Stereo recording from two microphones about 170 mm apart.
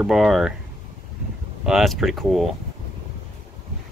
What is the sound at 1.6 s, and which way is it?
Speech, centre (ahead or behind).